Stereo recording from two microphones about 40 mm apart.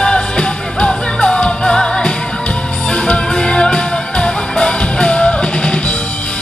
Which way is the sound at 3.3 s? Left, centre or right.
Centre.